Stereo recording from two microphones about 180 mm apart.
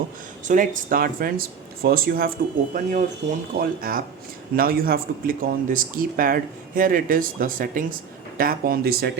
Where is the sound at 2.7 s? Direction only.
45° right (ahead or behind).